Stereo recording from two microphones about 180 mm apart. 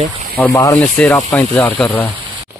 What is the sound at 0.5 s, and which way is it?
Speech, 20° left (ahead or behind).